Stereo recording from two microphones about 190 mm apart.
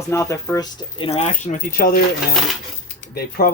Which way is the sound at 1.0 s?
35° left (ahead or behind).